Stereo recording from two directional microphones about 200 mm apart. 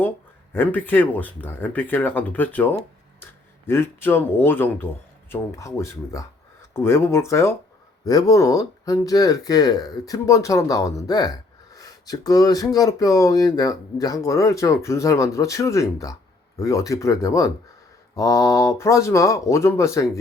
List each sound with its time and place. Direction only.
0.5 s speech: 10° left (ahead or behind)